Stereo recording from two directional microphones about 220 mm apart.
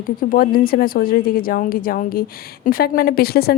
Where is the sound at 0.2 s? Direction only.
40° left (ahead or behind).